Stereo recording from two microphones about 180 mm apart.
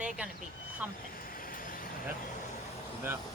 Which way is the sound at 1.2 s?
50° left (ahead or behind).